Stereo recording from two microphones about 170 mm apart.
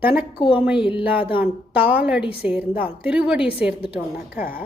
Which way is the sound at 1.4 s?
10° right (ahead or behind).